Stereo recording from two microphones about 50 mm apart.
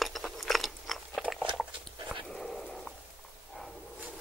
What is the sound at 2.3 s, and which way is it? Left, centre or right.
Dog, centre.